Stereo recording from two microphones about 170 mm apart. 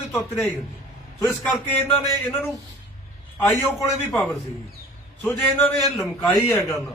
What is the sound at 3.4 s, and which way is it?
A man's voice, 5° left (ahead or behind).